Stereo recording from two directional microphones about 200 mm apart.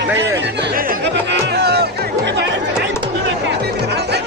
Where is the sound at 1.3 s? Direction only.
55° right (ahead or behind).